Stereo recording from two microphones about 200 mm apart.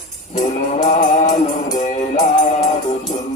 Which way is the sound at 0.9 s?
35° left (ahead or behind).